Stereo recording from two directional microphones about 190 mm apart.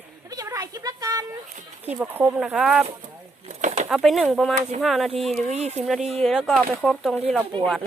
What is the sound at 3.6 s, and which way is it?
Bird, 40° right (ahead or behind).